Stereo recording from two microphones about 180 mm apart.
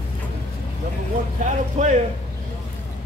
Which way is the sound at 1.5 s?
45° right (ahead or behind).